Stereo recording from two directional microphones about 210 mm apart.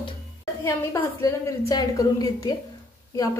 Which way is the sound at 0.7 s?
15° left (ahead or behind).